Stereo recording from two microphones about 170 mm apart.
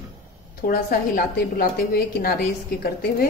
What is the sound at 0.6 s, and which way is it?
A woman's voice, 60° left (ahead or behind).